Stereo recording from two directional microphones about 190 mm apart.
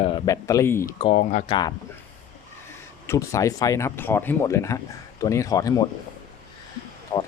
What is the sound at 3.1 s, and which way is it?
Speech, 15° left (ahead or behind).